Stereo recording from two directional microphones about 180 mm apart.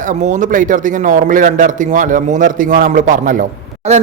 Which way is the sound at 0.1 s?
45° right (ahead or behind).